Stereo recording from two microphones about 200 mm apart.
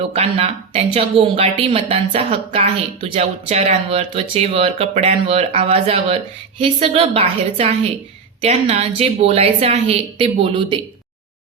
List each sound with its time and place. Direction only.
0.1 s a woman's voice: 30° right (ahead or behind)